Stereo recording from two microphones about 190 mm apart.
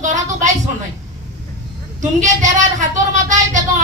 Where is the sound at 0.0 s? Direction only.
40° right (ahead or behind).